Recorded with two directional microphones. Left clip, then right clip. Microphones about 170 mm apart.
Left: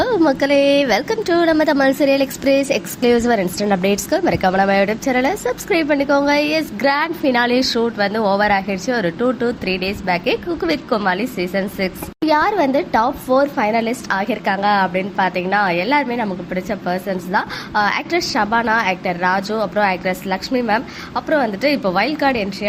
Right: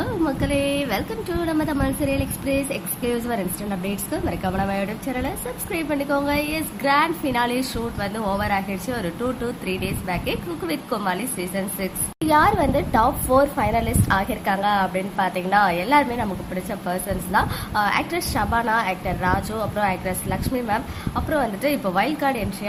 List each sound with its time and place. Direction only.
0.0 s a woman's voice: 35° left (ahead or behind); by 22.4 s 20° left (ahead or behind)